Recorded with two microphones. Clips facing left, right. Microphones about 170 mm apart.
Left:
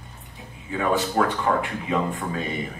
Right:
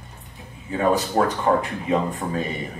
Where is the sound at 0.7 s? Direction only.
35° right (ahead or behind).